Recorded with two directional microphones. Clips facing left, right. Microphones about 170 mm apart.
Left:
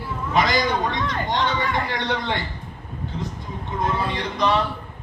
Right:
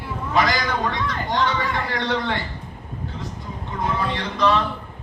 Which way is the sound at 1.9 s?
20° left (ahead or behind).